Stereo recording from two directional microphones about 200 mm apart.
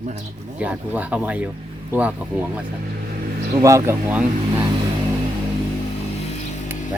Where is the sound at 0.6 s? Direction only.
5° right (ahead or behind).